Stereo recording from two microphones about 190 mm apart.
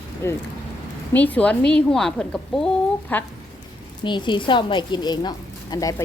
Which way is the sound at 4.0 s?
25° left (ahead or behind).